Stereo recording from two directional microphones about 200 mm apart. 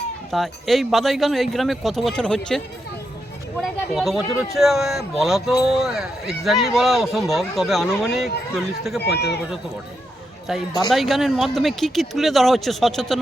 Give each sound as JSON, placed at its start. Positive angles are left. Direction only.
{"t": 0.3, "sound": "speech", "side_deg": 0}
{"t": 3.6, "sound": "speech", "side_deg": 0}
{"t": 9.0, "sound": "speech", "side_deg": 55}
{"t": 10.7, "sound": "speech", "side_deg": 20}
{"t": 10.9, "sound": "speech", "side_deg": 0}